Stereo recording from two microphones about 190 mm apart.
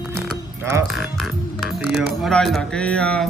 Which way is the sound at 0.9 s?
Centre (ahead or behind).